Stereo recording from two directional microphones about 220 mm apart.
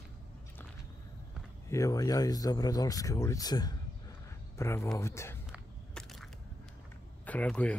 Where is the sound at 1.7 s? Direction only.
15° left (ahead or behind).